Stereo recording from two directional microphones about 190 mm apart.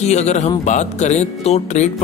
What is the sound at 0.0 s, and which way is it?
Speech, 35° left (ahead or behind).